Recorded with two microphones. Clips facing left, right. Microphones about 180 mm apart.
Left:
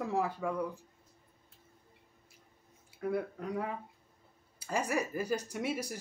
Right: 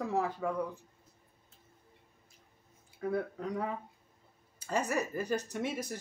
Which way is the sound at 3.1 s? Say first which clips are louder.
Right 1 dB; 10° left (ahead or behind).